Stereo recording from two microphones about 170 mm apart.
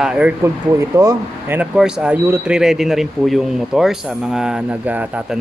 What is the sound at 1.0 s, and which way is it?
Speech, 15° right (ahead or behind).